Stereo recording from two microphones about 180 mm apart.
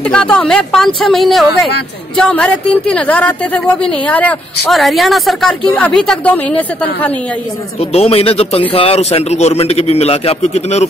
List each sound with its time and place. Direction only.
0.1 s a woman's voice: 5° left (ahead or behind)
7.9 s a man's voice: 35° left (ahead or behind)